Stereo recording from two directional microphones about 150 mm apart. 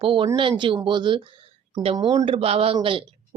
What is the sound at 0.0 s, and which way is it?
A woman's voice, 35° right (ahead or behind).